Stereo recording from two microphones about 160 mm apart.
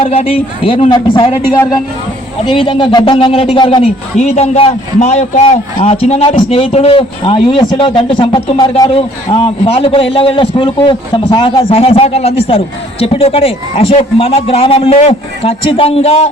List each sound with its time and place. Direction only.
0.0 s a man's voice: 35° left (ahead or behind)
2.5 s a man's voice: 30° left (ahead or behind)
4.2 s a man's voice: 40° left (ahead or behind)